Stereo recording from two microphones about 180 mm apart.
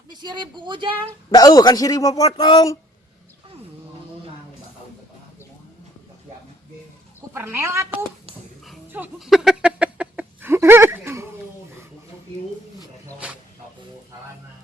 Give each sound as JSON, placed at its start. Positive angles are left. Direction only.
{"t": 0.1, "sound": "speech", "side_deg": -25}
{"t": 1.3, "sound": "a man's voice", "side_deg": 20}
{"t": 7.3, "sound": "speech", "side_deg": -15}
{"t": 8.9, "sound": "a sound", "side_deg": -5}